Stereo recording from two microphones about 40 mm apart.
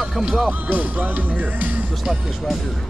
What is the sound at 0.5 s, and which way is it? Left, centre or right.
Speech, right.